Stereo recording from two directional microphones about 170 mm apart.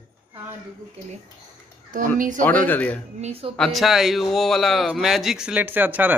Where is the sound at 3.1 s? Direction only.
40° right (ahead or behind).